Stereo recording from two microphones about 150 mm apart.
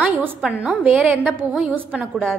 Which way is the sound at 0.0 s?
10° right (ahead or behind).